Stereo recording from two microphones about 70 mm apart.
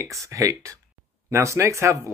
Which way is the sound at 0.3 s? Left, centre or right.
Right.